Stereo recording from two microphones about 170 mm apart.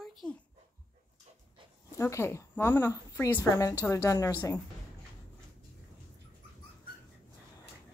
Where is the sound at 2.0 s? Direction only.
15° left (ahead or behind).